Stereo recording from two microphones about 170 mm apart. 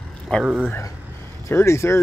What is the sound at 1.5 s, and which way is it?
Speech, 15° left (ahead or behind).